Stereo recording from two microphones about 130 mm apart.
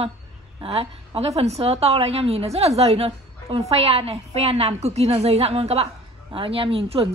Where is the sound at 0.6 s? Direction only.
45° right (ahead or behind).